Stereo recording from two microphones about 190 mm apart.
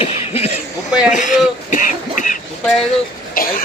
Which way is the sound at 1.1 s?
40° left (ahead or behind).